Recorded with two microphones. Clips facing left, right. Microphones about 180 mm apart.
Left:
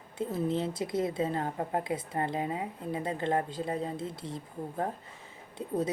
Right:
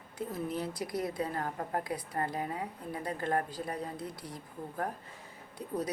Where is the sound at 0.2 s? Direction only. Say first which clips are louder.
Left 5 dB; 25° left (ahead or behind).